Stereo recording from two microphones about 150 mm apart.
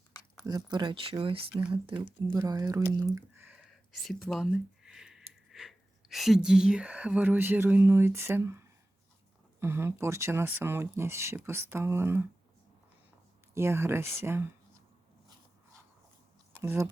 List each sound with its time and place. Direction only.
0.4 s speech: 25° right (ahead or behind)
2.3 s speech: 20° right (ahead or behind)
3.3 s speech: 10° right (ahead or behind)
13.5 s speech: 15° right (ahead or behind)
16.6 s speech: 15° right (ahead or behind)